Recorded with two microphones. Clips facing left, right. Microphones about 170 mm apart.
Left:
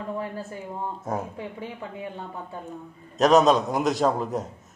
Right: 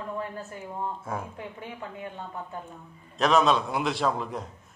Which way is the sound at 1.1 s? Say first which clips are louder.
Left 8 dB; 40° left (ahead or behind).